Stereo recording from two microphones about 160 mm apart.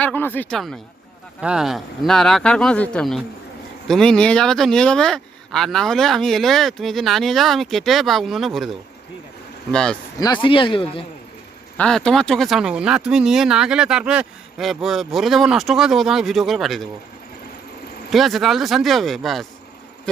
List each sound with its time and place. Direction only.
0.0 s speech: 10° left (ahead or behind)
1.4 s speech: 5° right (ahead or behind)
9.7 s speech: 5° left (ahead or behind)
10.2 s a man's voice: 25° left (ahead or behind)
11.8 s speech: 5° left (ahead or behind)
18.1 s speech: centre (ahead or behind)